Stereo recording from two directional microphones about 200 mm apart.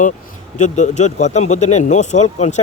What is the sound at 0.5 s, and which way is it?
Speech, 35° left (ahead or behind).